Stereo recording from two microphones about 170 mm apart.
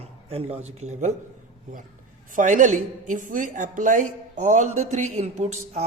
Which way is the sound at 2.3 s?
50° right (ahead or behind).